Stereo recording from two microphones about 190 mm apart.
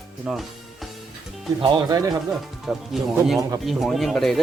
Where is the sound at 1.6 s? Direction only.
20° right (ahead or behind).